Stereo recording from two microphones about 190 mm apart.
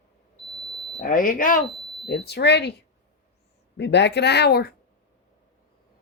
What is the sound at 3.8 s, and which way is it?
Speech, 65° left (ahead or behind).